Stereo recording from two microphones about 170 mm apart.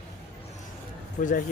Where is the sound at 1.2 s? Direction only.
50° left (ahead or behind).